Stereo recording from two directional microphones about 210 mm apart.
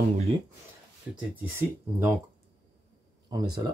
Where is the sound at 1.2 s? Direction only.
10° right (ahead or behind).